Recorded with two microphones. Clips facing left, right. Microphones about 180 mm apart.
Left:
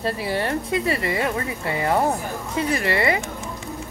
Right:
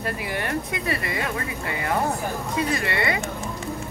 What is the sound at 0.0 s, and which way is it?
Speech, 30° left (ahead or behind).